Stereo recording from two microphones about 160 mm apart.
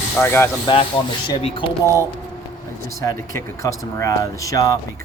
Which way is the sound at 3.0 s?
20° left (ahead or behind).